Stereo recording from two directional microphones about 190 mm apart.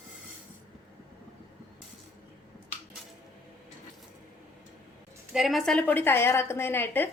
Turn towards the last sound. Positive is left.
turn(degrees=10)  # may be behind; listen again after turning